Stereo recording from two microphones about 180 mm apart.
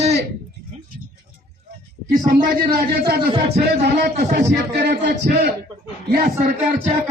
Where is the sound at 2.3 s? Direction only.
50° right (ahead or behind).